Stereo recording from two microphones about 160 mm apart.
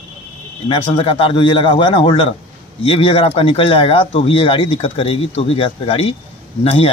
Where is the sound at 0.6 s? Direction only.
35° left (ahead or behind).